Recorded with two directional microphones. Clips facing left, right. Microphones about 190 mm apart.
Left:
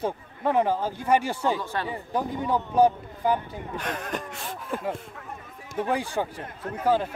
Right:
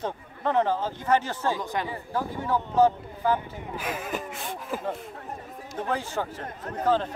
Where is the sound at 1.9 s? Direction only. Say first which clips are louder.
Left 2 dB; 20° left (ahead or behind).